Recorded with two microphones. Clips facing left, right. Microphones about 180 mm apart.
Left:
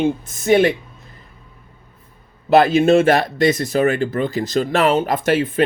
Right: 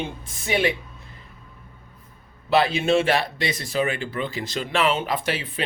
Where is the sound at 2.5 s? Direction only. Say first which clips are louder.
Left 7 dB; 45° left (ahead or behind).